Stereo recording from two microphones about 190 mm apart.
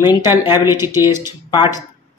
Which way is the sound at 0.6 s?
15° right (ahead or behind).